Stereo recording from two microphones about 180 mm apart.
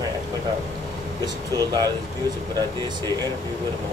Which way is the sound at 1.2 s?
20° right (ahead or behind).